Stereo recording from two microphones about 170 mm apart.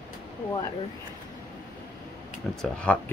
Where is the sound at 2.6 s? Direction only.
5° left (ahead or behind).